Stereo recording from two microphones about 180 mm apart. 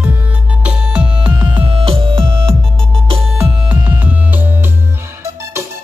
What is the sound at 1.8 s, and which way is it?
Music, 30° right (ahead or behind).